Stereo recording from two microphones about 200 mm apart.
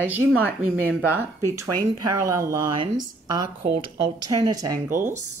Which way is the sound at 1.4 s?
15° right (ahead or behind).